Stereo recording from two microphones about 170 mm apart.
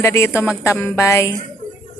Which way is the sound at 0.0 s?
15° left (ahead or behind).